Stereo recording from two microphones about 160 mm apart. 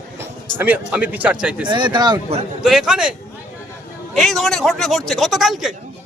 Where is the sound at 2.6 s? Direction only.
Centre (ahead or behind).